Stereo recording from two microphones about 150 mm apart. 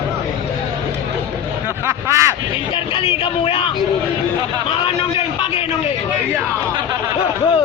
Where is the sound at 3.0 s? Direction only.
35° left (ahead or behind).